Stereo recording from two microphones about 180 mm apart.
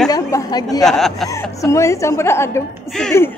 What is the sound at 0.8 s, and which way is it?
Speech, centre (ahead or behind).